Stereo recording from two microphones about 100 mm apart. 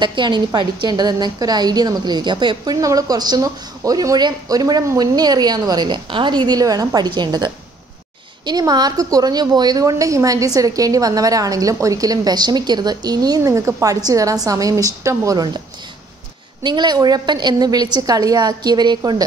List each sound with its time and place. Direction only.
0.0 s a woman's voice: 50° right (ahead or behind)
16.6 s a woman's voice: 45° right (ahead or behind)